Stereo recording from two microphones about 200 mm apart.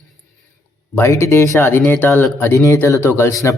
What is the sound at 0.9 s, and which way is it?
A man's voice, 15° left (ahead or behind).